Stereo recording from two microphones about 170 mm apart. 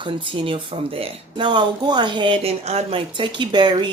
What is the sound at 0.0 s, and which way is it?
Speech, 30° right (ahead or behind).